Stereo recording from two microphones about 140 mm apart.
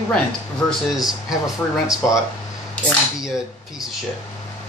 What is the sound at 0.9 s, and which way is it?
Speech, centre (ahead or behind).